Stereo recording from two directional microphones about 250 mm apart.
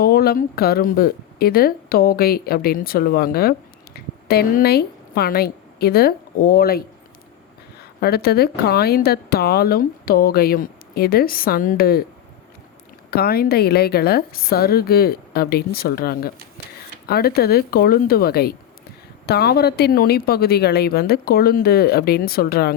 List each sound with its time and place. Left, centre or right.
0.0 s a woman's voice: left
8.0 s speech: left
13.1 s speech: left